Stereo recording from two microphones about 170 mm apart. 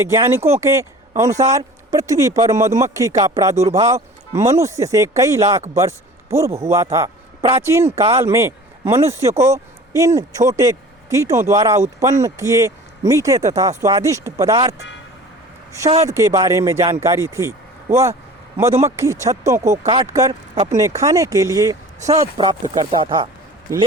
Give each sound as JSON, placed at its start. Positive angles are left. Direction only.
{"t": 0.0, "sound": "speech", "side_deg": -15}
{"t": 16.0, "sound": "speech", "side_deg": -20}
{"t": 19.8, "sound": "speech", "side_deg": -30}
{"t": 20.7, "sound": "speech", "side_deg": -20}